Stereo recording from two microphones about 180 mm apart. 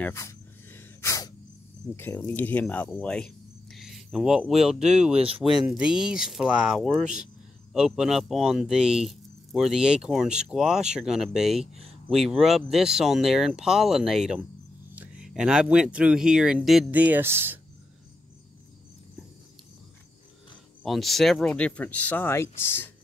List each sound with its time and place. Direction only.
0.0 s a sound: 15° left (ahead or behind)
2.0 s speech: 10° left (ahead or behind); by 5.1 s 5° right (ahead or behind)
5.1 s speech: 30° right (ahead or behind)
5.4 s speech: centre (ahead or behind)
20.8 s speech: centre (ahead or behind)